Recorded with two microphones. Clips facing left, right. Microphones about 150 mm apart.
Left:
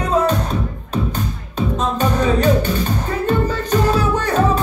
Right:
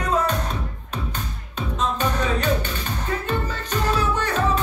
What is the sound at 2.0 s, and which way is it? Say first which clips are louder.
Music: left 9 dB; 40° left (ahead or behind).